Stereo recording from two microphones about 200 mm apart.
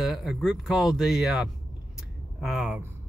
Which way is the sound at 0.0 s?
Centre (ahead or behind).